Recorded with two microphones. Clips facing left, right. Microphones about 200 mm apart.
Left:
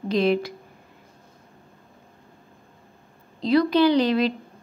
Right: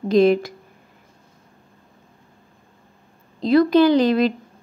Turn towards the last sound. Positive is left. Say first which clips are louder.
# right 3 dB
turn(degrees=-50)  # may be behind; listen again after turning